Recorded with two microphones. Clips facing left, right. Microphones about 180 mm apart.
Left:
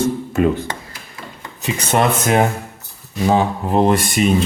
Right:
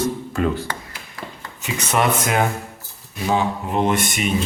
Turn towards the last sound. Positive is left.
turn(degrees=35)  # may be behind; listen again after turning